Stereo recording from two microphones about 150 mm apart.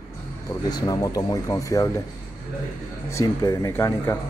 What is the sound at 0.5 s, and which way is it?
Speech, 25° left (ahead or behind).